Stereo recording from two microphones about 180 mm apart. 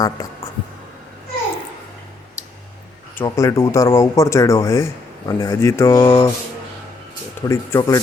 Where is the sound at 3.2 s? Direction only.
15° left (ahead or behind).